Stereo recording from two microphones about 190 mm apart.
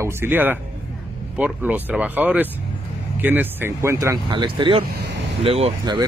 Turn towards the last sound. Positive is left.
turn(degrees=-30)  # may be behind; listen again after turning